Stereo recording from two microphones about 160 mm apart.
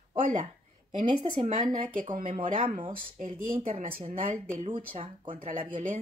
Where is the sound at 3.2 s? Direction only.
55° right (ahead or behind).